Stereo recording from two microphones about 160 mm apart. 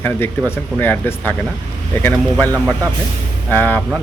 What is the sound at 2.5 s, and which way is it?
Speech, 20° right (ahead or behind).